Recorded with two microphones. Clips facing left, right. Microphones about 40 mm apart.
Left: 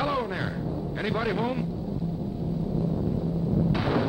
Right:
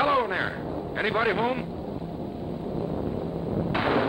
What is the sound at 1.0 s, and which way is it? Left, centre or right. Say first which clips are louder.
Speech: right 3 dB; right.